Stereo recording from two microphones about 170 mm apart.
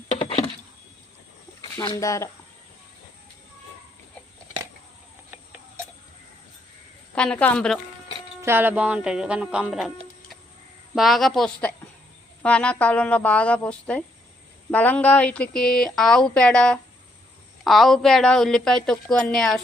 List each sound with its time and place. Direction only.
0.1 s a sound: 40° left (ahead or behind)
1.7 s a woman's voice: 20° left (ahead or behind)
5.3 s clock: 10° right (ahead or behind)
7.2 s speech: 5° left (ahead or behind)
8.0 s speech: 15° right (ahead or behind)
10.9 s a woman's voice: centre (ahead or behind)